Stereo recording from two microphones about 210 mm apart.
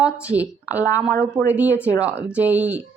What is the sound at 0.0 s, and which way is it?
Speech, 5° right (ahead or behind).